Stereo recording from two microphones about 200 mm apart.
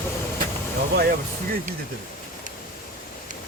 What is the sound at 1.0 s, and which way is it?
Vehicle, 45° right (ahead or behind).